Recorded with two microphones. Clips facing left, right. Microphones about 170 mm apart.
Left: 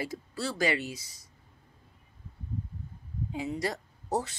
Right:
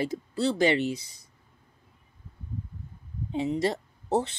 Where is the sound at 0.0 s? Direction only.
20° right (ahead or behind).